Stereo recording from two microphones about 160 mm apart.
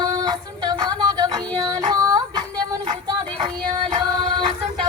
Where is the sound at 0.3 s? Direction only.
25° right (ahead or behind).